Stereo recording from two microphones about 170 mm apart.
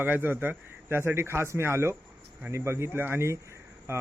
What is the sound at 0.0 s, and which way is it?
Speech, 10° right (ahead or behind).